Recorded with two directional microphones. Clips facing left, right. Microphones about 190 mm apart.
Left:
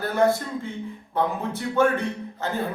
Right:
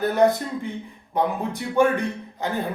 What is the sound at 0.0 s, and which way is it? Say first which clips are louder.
A man's voice: right 2 dB; 20° right (ahead or behind).